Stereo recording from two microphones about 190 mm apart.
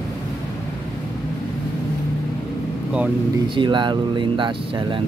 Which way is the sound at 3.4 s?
25° right (ahead or behind).